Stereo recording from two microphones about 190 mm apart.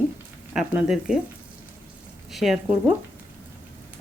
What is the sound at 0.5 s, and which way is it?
Speech, 5° right (ahead or behind).